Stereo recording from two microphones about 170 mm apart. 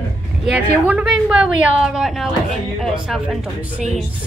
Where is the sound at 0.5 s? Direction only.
10° right (ahead or behind).